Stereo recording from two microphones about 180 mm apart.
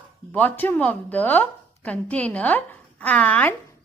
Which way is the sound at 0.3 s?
10° left (ahead or behind).